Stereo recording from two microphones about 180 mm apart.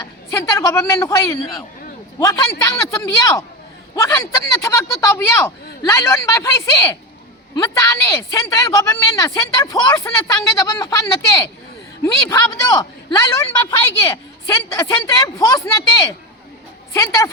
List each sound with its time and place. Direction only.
0.3 s a woman's voice: 15° left (ahead or behind)